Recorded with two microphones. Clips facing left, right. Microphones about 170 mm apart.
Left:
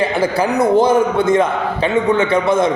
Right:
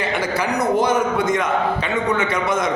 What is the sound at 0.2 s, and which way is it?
A man's voice, 30° left (ahead or behind).